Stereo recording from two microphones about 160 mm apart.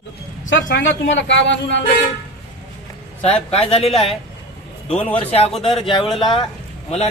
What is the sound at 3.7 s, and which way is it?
Speech, 35° left (ahead or behind).